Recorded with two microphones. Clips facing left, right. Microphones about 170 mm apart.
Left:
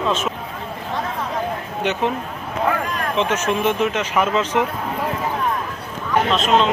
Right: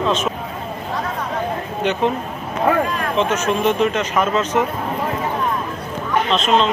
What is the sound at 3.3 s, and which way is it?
Speech, 10° left (ahead or behind).